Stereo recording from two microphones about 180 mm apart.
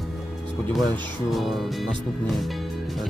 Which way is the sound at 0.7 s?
Centre (ahead or behind).